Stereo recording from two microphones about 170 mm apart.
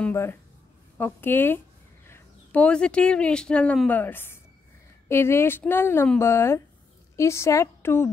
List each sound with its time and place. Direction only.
0.0 s a woman's voice: 15° left (ahead or behind)